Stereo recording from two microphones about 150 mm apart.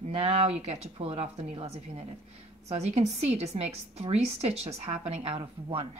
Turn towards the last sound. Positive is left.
turn(degrees=-40)  # may be behind; listen again after turning